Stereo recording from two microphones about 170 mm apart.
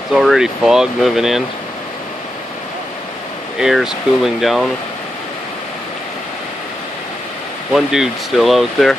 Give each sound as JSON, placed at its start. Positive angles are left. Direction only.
{"t": 0.1, "sound": "speech", "side_deg": 0}
{"t": 3.5, "sound": "speech", "side_deg": -5}
{"t": 7.7, "sound": "speech", "side_deg": -5}